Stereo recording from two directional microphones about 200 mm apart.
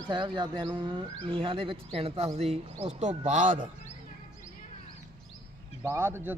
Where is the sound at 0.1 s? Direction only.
20° right (ahead or behind); by 3.5 s 40° right (ahead or behind).